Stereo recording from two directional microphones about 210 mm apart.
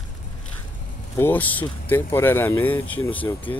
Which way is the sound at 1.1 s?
10° left (ahead or behind).